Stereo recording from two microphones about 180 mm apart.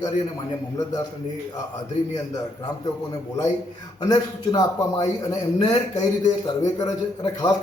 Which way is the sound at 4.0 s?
20° left (ahead or behind).